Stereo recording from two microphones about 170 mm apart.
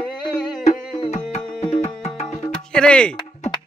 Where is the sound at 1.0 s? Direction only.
40° left (ahead or behind).